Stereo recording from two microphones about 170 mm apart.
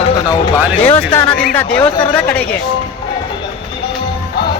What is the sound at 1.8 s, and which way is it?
Speech, 25° left (ahead or behind).